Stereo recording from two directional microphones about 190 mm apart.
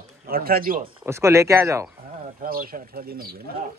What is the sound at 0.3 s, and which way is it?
Speech, 50° right (ahead or behind).